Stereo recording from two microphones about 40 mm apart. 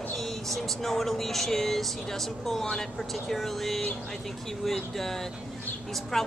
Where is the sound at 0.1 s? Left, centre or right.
Centre.